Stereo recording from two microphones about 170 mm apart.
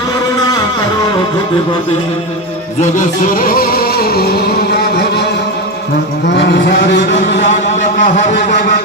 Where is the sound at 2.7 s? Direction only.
45° left (ahead or behind); by 5.3 s 80° left.